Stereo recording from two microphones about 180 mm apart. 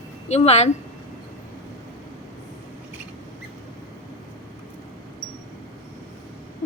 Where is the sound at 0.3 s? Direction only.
35° left (ahead or behind).